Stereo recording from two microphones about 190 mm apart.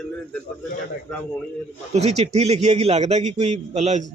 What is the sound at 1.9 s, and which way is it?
A man's voice, 35° right (ahead or behind).